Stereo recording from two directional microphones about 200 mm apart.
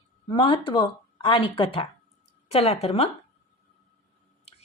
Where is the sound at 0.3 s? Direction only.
25° left (ahead or behind).